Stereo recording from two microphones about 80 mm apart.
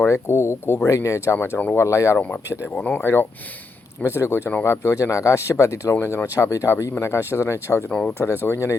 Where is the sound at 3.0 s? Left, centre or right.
Left.